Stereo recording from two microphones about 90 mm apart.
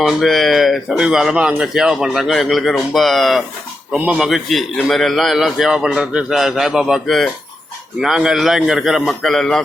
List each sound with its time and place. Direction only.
0.0 s speech: 5° right (ahead or behind)
3.9 s speech: 15° right (ahead or behind)
4.2 s speech: centre (ahead or behind)